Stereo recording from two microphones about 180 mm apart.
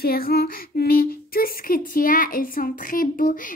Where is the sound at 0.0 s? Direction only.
55° left (ahead or behind).